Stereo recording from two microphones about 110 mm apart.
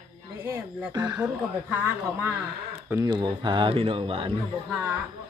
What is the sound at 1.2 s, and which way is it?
Speech, 20° right (ahead or behind).